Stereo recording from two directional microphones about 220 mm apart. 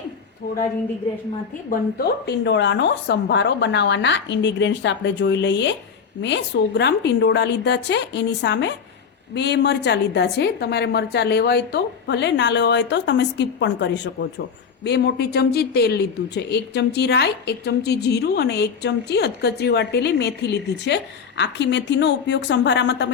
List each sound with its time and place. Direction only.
1.7 s speech: 45° left (ahead or behind)